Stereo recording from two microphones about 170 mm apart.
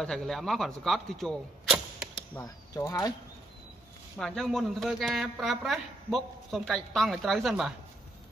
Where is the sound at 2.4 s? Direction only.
20° left (ahead or behind).